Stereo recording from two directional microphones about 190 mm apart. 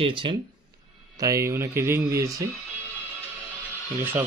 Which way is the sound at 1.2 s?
15° right (ahead or behind).